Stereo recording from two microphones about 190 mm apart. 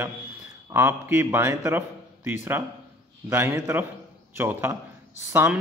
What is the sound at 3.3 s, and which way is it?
Speech, 15° right (ahead or behind).